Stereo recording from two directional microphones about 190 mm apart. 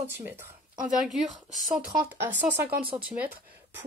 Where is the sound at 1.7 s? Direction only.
5° right (ahead or behind).